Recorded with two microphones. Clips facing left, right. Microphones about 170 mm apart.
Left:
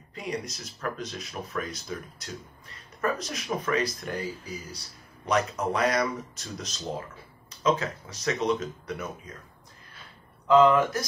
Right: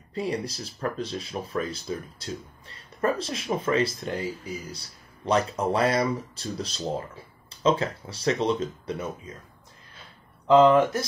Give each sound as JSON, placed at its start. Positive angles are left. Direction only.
{"t": 0.1, "sound": "speech", "side_deg": -30}
{"t": 5.2, "sound": "speech", "side_deg": -30}
{"t": 10.4, "sound": "speech", "side_deg": -25}